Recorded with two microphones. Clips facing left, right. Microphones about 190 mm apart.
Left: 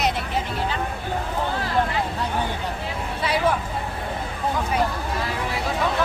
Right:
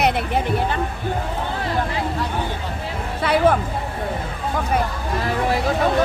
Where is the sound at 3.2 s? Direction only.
55° right (ahead or behind).